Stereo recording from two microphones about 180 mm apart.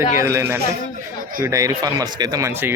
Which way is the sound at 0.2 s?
15° right (ahead or behind).